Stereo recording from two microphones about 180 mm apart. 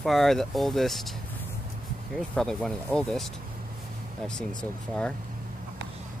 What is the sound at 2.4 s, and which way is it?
Speech, 5° left (ahead or behind).